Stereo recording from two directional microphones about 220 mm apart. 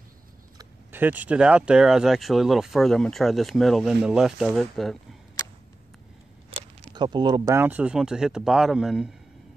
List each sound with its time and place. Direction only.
0.6 s speech: 10° right (ahead or behind)
6.9 s speech: 20° right (ahead or behind); by 9.1 s 5° right (ahead or behind)